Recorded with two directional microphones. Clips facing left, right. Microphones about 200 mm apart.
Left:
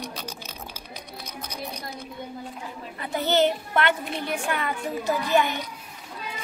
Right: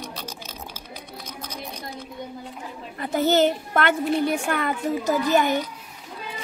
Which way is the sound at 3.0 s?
45° right (ahead or behind).